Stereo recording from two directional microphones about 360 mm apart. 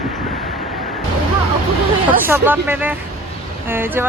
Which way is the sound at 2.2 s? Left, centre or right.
Centre.